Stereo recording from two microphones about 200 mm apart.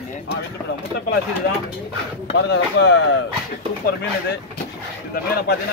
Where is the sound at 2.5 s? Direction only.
55° left (ahead or behind).